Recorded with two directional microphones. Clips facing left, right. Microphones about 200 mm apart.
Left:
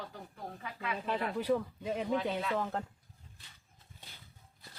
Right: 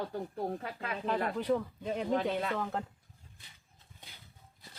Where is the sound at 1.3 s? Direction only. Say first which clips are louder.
Even; 5° left (ahead or behind).